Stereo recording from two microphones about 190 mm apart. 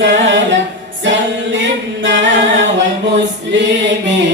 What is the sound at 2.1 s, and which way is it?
Music, 65° right (ahead or behind).